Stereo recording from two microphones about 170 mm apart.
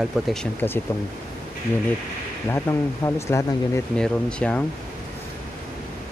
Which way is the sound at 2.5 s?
15° left (ahead or behind).